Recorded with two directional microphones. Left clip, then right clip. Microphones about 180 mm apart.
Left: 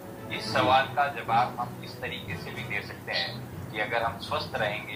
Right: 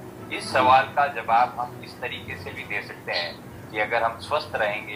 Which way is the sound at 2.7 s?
50° right (ahead or behind).